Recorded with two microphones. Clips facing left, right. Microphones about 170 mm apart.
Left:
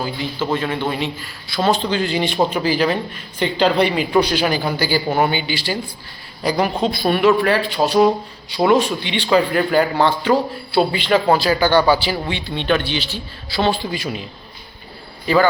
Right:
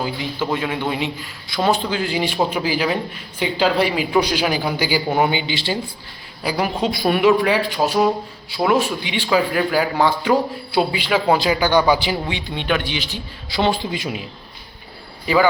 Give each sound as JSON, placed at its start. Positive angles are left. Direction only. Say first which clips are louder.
{"t": 0.0, "sound": "a man's voice", "louder": "even", "side_deg": -15}
{"t": 6.4, "sound": "a woman's voice", "louder": "left 2 dB", "side_deg": -10}
{"t": 15.3, "sound": "a man's voice", "louder": "left 1 dB", "side_deg": -15}